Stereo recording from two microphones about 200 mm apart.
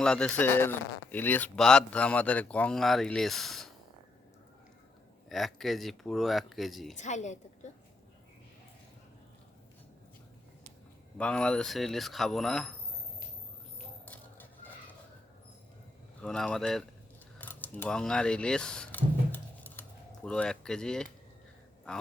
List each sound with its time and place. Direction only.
0.0 s speech: 5° left (ahead or behind)
5.3 s speech: centre (ahead or behind)
6.9 s a woman's voice: 35° left (ahead or behind)
11.2 s speech: 5° left (ahead or behind)
14.0 s a sound: 10° left (ahead or behind)
16.2 s speech: 5° left (ahead or behind)
17.4 s a sound: 10° left (ahead or behind)
20.2 s speech: 5° left (ahead or behind)